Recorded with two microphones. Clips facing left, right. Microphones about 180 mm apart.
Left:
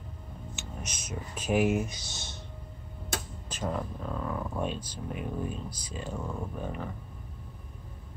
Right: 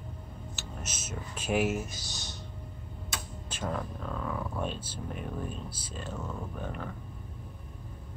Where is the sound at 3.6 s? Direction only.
5° left (ahead or behind).